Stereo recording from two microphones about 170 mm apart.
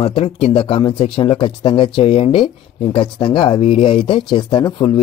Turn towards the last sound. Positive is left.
turn(degrees=25)  # may be behind; listen again after turning